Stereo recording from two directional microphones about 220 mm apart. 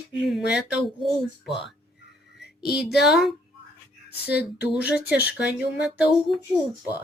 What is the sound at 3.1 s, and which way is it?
Speech, centre (ahead or behind).